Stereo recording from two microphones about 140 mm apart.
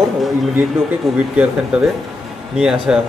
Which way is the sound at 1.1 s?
Centre (ahead or behind).